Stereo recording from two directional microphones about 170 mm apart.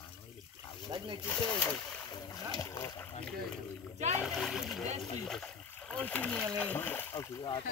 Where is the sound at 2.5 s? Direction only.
20° left (ahead or behind).